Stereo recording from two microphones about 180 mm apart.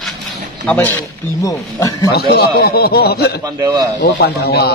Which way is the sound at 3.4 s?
20° right (ahead or behind).